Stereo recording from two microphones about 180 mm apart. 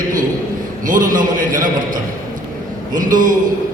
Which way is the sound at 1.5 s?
45° right (ahead or behind).